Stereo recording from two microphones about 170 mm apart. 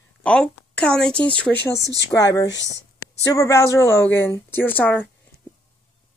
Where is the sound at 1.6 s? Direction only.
85° left.